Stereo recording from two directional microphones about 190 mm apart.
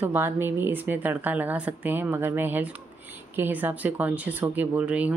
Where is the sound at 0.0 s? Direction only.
10° right (ahead or behind).